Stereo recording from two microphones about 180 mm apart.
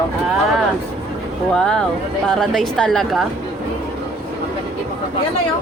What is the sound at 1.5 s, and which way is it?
A woman's voice, 5° left (ahead or behind).